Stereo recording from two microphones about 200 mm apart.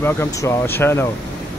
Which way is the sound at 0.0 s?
15° left (ahead or behind).